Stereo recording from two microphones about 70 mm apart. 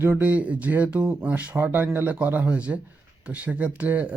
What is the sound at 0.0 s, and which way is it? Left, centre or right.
Speech, right.